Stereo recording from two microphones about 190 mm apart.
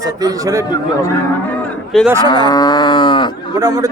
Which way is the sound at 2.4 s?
20° left (ahead or behind).